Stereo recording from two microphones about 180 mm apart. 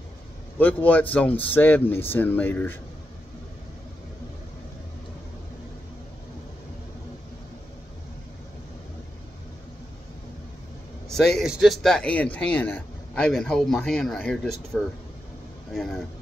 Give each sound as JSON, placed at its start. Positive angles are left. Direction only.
{"t": 0.6, "sound": "speech", "side_deg": 10}
{"t": 11.1, "sound": "a man's voice", "side_deg": 5}